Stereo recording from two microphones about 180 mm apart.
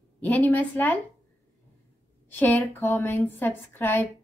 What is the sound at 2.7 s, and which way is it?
A woman's voice, 10° left (ahead or behind).